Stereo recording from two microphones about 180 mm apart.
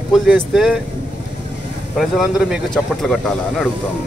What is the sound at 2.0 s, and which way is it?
Speech, centre (ahead or behind).